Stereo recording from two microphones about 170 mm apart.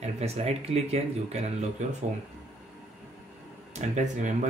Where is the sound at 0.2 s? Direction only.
40° right (ahead or behind).